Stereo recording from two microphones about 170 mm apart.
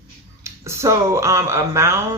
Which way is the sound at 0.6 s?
15° right (ahead or behind).